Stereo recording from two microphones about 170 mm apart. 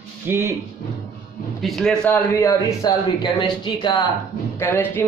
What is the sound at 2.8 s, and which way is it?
Speech, 25° left (ahead or behind).